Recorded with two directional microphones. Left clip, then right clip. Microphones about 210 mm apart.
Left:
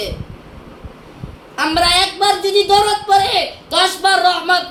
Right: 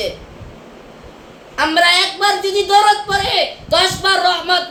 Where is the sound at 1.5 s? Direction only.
15° right (ahead or behind).